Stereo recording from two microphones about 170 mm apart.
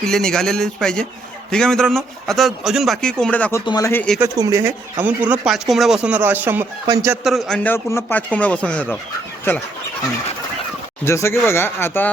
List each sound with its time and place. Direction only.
0.0 s a man's voice: 5° left (ahead or behind)
3.7 s speech: 20° left (ahead or behind)
4.2 s speech: 20° right (ahead or behind)
7.3 s speech: centre (ahead or behind)
11.0 s speech: 15° left (ahead or behind)